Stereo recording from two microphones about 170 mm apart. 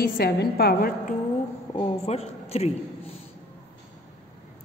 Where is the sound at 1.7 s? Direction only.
35° left (ahead or behind).